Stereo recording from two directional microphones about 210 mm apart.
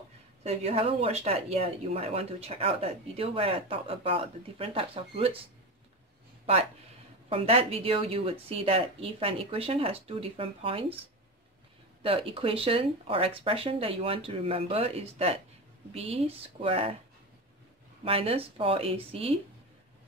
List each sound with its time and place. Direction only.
0.4 s speech: 30° right (ahead or behind)
7.2 s speech: 30° right (ahead or behind)
12.0 s speech: 25° right (ahead or behind)
18.0 s speech: 25° right (ahead or behind)